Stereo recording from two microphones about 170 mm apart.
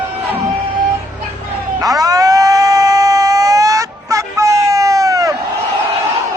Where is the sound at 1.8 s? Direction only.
20° right (ahead or behind).